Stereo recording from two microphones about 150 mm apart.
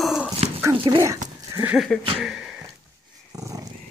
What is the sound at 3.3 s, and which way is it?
Dog, 25° right (ahead or behind).